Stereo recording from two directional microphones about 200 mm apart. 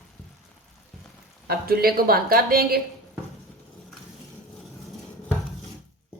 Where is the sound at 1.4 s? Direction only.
50° right (ahead or behind).